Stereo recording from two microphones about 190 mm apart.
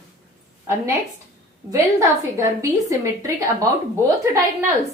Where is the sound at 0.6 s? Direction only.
15° right (ahead or behind).